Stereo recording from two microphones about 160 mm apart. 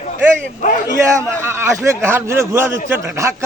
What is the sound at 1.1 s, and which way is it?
A man's voice, 15° right (ahead or behind).